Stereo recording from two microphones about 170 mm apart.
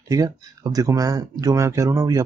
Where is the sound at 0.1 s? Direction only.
20° right (ahead or behind).